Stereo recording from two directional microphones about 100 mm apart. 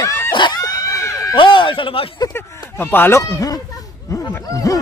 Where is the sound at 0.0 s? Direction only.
25° left (ahead or behind).